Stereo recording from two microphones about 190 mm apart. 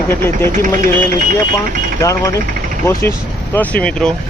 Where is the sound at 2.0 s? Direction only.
15° left (ahead or behind).